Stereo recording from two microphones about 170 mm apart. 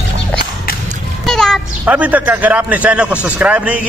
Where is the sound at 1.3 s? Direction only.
5° left (ahead or behind).